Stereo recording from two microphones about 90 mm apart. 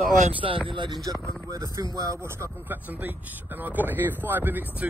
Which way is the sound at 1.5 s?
40° right (ahead or behind).